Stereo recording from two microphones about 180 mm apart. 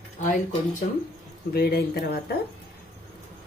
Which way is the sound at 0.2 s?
45° left (ahead or behind).